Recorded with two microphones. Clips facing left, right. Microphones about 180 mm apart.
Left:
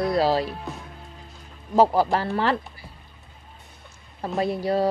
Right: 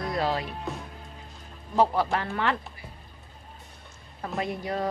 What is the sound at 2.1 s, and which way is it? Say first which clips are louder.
Speech: left 5 dB; 35° left (ahead or behind).